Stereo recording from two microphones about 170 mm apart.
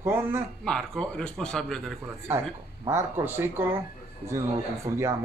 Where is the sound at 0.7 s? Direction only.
5° left (ahead or behind).